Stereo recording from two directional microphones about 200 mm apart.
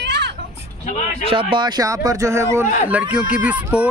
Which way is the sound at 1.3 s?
25° right (ahead or behind).